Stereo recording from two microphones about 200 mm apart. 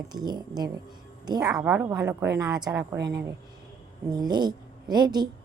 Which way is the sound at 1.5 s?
5° right (ahead or behind).